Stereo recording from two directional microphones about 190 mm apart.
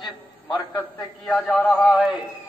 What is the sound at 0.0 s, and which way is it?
A man's voice, 10° left (ahead or behind).